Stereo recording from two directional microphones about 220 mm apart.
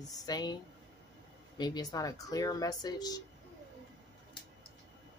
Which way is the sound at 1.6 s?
20° left (ahead or behind).